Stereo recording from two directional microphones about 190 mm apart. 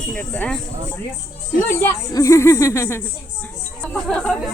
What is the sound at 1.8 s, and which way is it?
Speech, 15° left (ahead or behind).